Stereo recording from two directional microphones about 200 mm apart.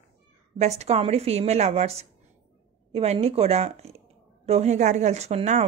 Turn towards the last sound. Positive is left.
turn(degrees=-35)  # may be behind; listen again after turning